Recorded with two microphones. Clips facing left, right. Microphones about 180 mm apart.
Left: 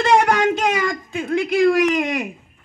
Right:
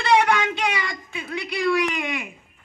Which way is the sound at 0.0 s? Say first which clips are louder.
Left 4 dB; 45° left (ahead or behind).